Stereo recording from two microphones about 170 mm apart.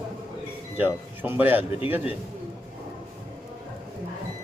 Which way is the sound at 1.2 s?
10° right (ahead or behind).